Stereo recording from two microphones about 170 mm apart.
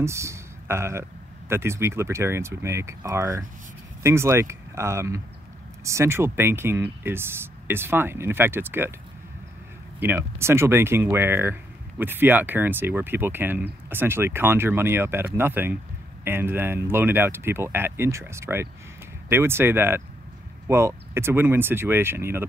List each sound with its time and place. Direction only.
0.0 s speech: 15° right (ahead or behind)
9.9 s speech: 10° right (ahead or behind)